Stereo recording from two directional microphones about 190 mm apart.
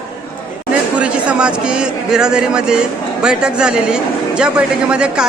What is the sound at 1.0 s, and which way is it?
Speech, 5° right (ahead or behind).